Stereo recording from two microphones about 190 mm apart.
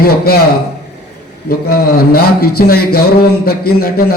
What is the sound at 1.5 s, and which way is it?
Speech, 55° left (ahead or behind).